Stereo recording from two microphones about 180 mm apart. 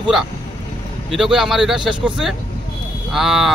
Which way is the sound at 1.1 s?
Centre (ahead or behind).